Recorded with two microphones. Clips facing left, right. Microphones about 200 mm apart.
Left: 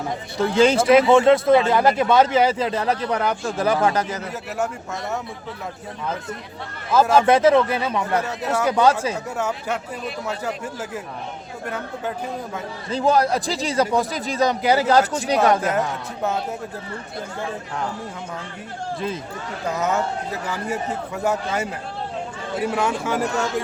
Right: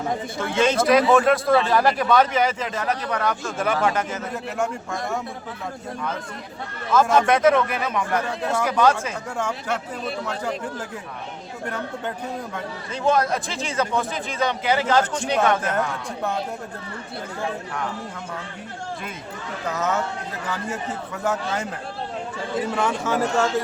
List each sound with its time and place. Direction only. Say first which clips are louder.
0.3 s a man's voice: left 5 dB; 35° left (ahead or behind)
6.9 s a man's voice: left 2 dB; 30° left (ahead or behind)
8.3 s speech: left 1 dB; 5° left (ahead or behind)
8.6 s speech: left 2 dB; 30° left (ahead or behind)
9.4 s speech: right 1 dB; 5° left (ahead or behind)
12.9 s speech: left 2 dB; 35° left (ahead or behind)
19.6 s speech: left 2 dB; 10° left (ahead or behind)
21.2 s speech: left 2 dB; 10° left (ahead or behind)